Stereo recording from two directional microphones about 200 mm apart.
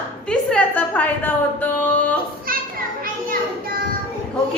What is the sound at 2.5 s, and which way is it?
Children playing, 45° right (ahead or behind).